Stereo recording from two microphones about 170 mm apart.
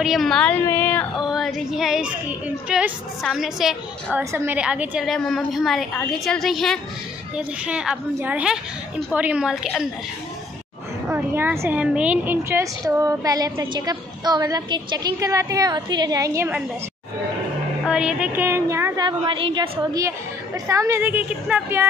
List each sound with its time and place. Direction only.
0.0 s speech: centre (ahead or behind)
1.1 s a woman's voice: centre (ahead or behind)
4.2 s a woman's voice: 15° right (ahead or behind)
11.1 s a woman's voice: 10° right (ahead or behind)
17.8 s a woman's voice: 5° right (ahead or behind)
19.0 s a woman's voice: 30° right (ahead or behind); by 21.8 s 10° right (ahead or behind)